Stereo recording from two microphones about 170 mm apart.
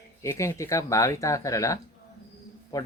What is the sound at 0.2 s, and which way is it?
Speech, 15° left (ahead or behind).